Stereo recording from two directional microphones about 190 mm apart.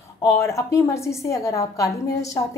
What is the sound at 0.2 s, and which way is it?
Speech, 15° left (ahead or behind).